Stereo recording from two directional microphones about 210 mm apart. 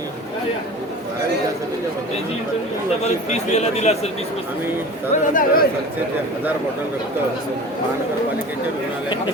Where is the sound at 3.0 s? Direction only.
30° left (ahead or behind).